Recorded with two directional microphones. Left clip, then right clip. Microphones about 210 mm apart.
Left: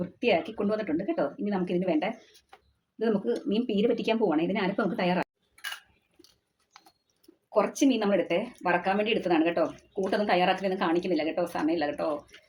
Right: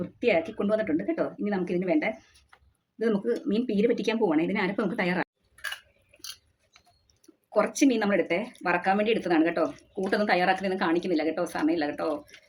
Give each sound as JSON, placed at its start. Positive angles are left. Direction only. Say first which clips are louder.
{"t": 0.2, "sound": "a woman's voice", "louder": "right 1 dB", "side_deg": -15}
{"t": 7.6, "sound": "a woman's voice", "louder": "right 2 dB", "side_deg": -15}